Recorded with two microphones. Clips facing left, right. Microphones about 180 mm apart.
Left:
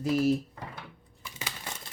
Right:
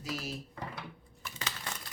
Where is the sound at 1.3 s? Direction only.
15° left (ahead or behind).